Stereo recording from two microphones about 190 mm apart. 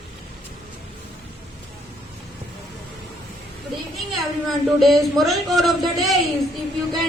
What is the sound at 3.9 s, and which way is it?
A child's voice, centre (ahead or behind).